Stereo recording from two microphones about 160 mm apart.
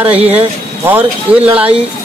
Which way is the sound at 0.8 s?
10° right (ahead or behind).